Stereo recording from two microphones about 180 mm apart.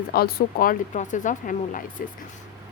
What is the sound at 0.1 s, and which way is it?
Speech, 60° left (ahead or behind).